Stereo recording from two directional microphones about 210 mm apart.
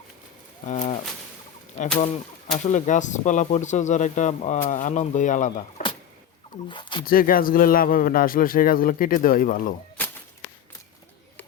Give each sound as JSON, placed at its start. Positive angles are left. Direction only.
{"t": 0.7, "sound": "a sound", "side_deg": 35}
{"t": 2.6, "sound": "speech", "side_deg": 35}
{"t": 6.7, "sound": "speech", "side_deg": 20}
{"t": 7.0, "sound": "a man's voice", "side_deg": 45}